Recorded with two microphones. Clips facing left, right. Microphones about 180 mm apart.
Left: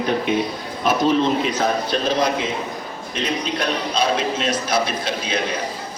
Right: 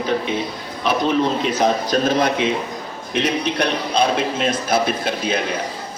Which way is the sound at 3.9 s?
55° right (ahead or behind).